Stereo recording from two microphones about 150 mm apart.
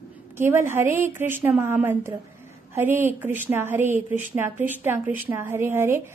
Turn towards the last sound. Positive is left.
turn(degrees=-15)  # may be behind; listen again after turning